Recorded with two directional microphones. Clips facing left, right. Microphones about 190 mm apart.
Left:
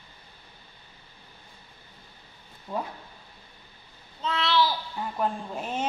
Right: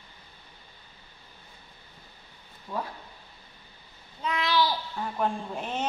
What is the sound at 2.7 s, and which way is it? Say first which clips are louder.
Speech: left 2 dB; 20° left (ahead or behind).